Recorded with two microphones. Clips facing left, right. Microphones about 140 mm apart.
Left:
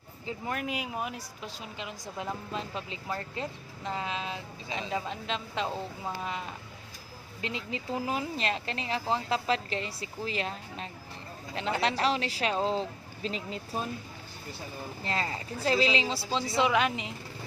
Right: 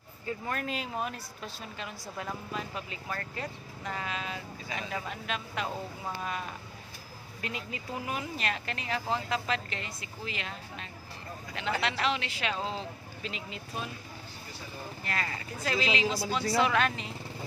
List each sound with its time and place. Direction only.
0.3 s speech: 15° left (ahead or behind); by 13.9 s 35° left (ahead or behind)
15.0 s speech: 25° left (ahead or behind)
16.3 s speech: 20° left (ahead or behind)